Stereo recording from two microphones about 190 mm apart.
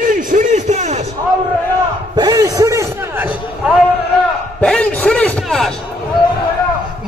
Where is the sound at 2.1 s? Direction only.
20° right (ahead or behind).